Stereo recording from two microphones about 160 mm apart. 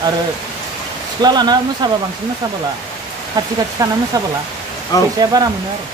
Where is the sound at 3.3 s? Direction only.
25° right (ahead or behind).